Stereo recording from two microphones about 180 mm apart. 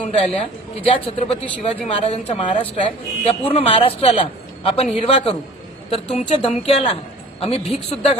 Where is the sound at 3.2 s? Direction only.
30° left (ahead or behind).